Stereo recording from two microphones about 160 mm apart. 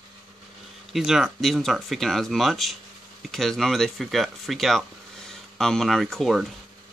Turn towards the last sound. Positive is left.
turn(degrees=0)  # may be behind; listen again after turning